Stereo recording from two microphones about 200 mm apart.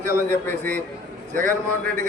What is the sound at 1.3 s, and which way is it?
Speech, 40° right (ahead or behind).